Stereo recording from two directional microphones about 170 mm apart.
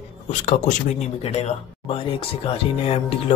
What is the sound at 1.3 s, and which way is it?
Speech, 40° left (ahead or behind).